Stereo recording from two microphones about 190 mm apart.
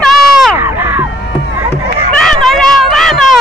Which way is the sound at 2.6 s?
Centre (ahead or behind).